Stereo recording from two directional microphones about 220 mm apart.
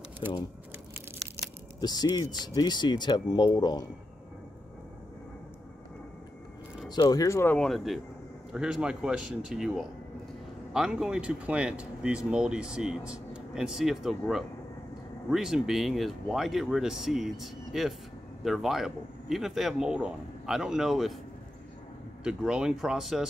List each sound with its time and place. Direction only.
1.8 s speech: 20° left (ahead or behind)
6.9 s speech: 20° left (ahead or behind); by 21.2 s centre (ahead or behind)
22.2 s speech: 5° right (ahead or behind)